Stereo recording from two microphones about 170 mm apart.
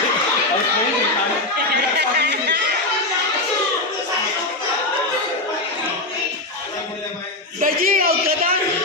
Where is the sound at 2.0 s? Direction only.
75° right (ahead or behind).